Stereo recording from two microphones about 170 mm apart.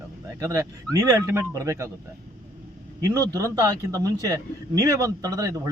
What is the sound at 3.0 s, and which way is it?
A man's voice, 20° right (ahead or behind).